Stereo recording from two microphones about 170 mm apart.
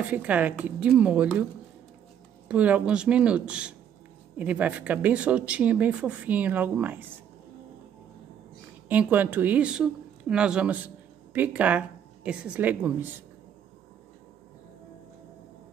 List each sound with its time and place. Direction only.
0.0 s speech: 10° right (ahead or behind)
2.4 s speech: 10° right (ahead or behind)
8.8 s speech: 10° right (ahead or behind)